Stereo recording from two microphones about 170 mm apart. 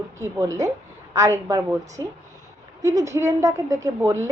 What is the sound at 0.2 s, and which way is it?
A woman's voice, 20° right (ahead or behind).